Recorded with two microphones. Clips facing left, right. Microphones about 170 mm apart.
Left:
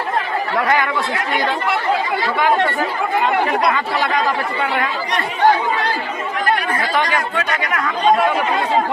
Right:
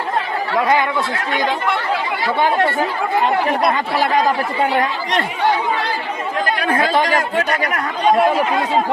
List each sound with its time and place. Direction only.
0.5 s speech: 25° right (ahead or behind)
3.6 s speech: 35° right (ahead or behind)
6.9 s speech: 40° right (ahead or behind)